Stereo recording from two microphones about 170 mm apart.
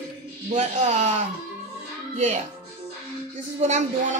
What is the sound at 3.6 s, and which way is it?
Music, 40° right (ahead or behind).